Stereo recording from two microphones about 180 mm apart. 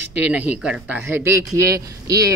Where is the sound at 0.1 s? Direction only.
10° right (ahead or behind).